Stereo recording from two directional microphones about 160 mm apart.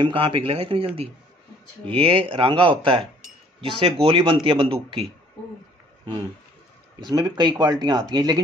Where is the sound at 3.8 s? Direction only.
35° right (ahead or behind).